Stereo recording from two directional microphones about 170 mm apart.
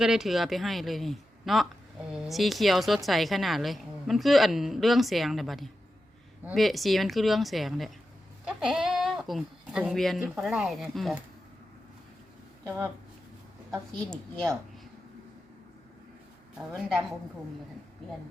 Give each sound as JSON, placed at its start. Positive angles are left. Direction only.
{"t": 0.0, "sound": "a woman's voice", "side_deg": -5}
{"t": 12.6, "sound": "speech", "side_deg": -10}
{"t": 16.6, "sound": "a woman's voice", "side_deg": 0}